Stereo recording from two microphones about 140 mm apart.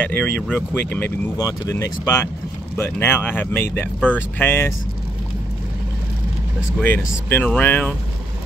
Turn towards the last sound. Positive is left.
turn(degrees=10)  # may be behind; listen again after turning